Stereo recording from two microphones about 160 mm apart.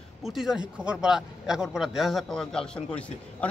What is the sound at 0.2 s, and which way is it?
A man's voice, centre (ahead or behind).